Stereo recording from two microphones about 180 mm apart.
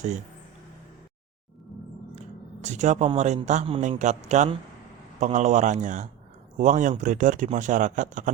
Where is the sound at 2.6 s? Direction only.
40° right (ahead or behind).